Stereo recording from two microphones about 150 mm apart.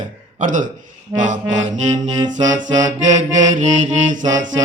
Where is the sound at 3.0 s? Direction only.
55° right (ahead or behind).